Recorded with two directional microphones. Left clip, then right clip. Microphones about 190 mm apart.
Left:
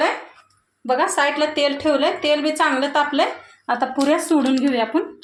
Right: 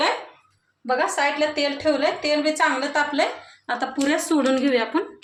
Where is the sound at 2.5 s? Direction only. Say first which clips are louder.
Left 3 dB; 35° left (ahead or behind).